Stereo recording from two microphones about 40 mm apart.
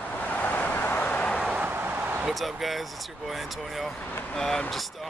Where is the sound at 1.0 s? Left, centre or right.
Left.